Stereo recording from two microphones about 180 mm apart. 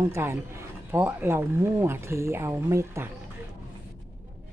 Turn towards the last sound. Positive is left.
turn(degrees=-15)  # may be behind; listen again after turning